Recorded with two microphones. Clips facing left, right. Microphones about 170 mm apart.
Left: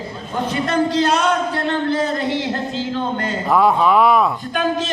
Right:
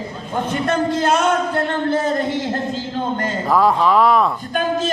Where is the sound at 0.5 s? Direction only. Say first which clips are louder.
Left 1 dB; 50° right (ahead or behind).